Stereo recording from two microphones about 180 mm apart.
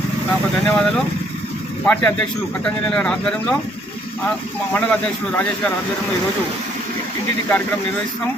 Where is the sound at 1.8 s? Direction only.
10° left (ahead or behind).